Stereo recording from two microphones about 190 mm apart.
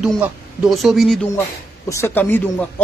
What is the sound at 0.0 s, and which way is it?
A man's voice, centre (ahead or behind).